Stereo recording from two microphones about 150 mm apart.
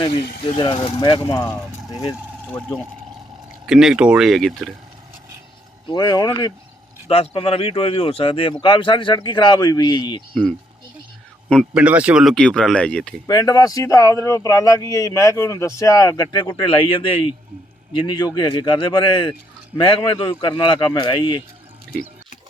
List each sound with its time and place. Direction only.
0.1 s speech: 35° left (ahead or behind)
3.7 s speech: 5° right (ahead or behind)
5.9 s speech: 25° left (ahead or behind)
7.1 s speech: 40° left (ahead or behind)
11.7 s speech: 10° right (ahead or behind)
13.2 s speech: 25° left (ahead or behind)